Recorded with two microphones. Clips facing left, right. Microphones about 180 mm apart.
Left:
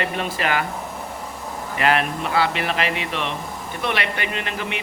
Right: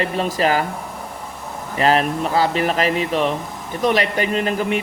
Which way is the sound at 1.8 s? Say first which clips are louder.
Right 4 dB; 35° right (ahead or behind).